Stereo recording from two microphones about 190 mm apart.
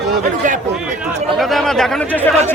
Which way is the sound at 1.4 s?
Centre (ahead or behind).